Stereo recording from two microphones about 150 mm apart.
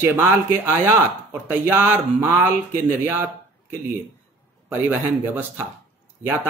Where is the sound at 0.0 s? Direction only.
15° right (ahead or behind).